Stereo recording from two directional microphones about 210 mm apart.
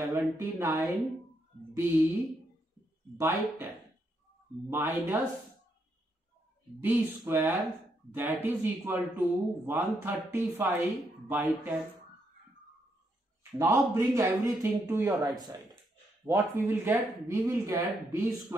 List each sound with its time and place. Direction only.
0.1 s speech: 15° right (ahead or behind)
1.7 s music: 10° right (ahead or behind)
3.2 s speech: 10° right (ahead or behind)
6.8 s speech: 10° right (ahead or behind)
13.4 s speech: 10° right (ahead or behind)